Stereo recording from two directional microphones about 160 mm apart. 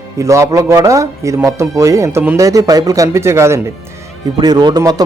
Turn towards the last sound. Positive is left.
turn(degrees=-25)  # may be behind; listen again after turning